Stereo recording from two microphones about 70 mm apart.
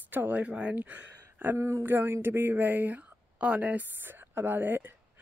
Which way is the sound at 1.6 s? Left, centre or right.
Right.